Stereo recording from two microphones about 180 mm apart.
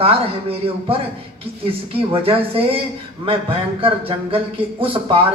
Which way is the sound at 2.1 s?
30° right (ahead or behind).